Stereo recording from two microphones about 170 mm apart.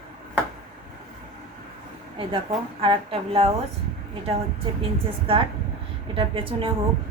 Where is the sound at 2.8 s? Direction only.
35° right (ahead or behind).